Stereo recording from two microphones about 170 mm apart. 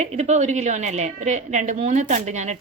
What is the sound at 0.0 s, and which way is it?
A woman's voice, 40° right (ahead or behind).